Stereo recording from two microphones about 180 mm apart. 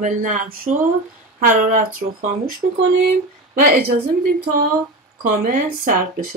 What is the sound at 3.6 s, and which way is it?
Speech, 55° right (ahead or behind).